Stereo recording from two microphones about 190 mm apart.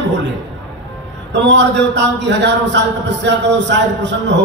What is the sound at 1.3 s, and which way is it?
A man's voice, 65° right (ahead or behind).